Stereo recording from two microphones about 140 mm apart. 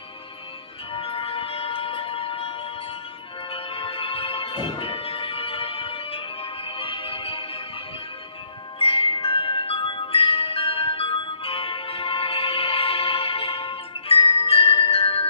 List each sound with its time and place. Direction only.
0.9 s music: 40° left (ahead or behind)
8.8 s music: 40° left (ahead or behind)